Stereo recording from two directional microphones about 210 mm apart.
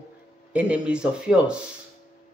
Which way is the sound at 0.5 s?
5° right (ahead or behind).